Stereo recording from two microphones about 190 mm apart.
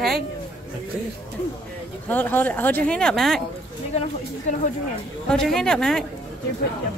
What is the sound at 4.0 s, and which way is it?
Speech, 40° left (ahead or behind).